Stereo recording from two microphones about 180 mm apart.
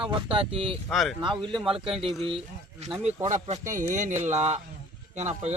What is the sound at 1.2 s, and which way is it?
Speech, 25° right (ahead or behind).